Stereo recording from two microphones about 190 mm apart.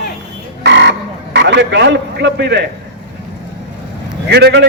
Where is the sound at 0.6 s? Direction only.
65° right (ahead or behind).